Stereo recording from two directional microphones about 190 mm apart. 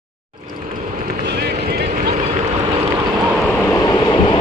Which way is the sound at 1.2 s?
60° right (ahead or behind).